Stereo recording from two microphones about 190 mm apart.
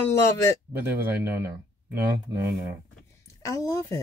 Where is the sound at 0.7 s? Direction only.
10° right (ahead or behind).